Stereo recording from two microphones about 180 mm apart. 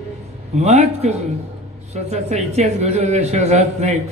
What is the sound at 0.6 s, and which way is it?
Speech, 35° right (ahead or behind).